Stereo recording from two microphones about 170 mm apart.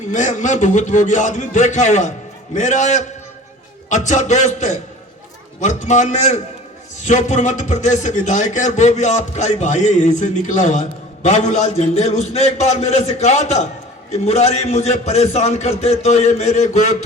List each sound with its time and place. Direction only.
0.1 s a man's voice: 45° left (ahead or behind)